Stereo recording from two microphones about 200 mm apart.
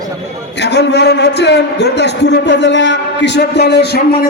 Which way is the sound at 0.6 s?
60° left (ahead or behind).